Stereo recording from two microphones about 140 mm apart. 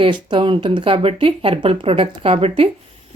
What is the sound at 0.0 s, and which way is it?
Speech, 35° right (ahead or behind).